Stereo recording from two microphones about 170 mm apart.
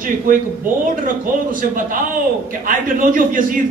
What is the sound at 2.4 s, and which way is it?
Speech, 55° right (ahead or behind).